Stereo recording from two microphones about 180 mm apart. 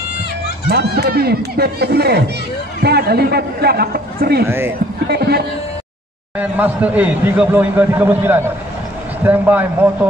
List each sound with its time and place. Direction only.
0.7 s a man's voice: 65° right (ahead or behind)
4.5 s speech: 15° right (ahead or behind)
5.0 s a man's voice: 60° right (ahead or behind)
6.3 s speech: 10° right (ahead or behind)